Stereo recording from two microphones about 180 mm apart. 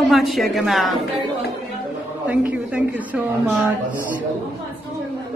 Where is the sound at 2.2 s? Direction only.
5° right (ahead or behind).